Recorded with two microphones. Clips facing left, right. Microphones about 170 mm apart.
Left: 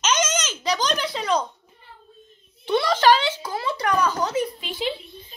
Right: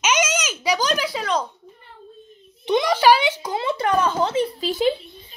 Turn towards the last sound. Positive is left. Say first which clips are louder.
# right 7 dB
turn(degrees=-40)  # may be behind; listen again after turning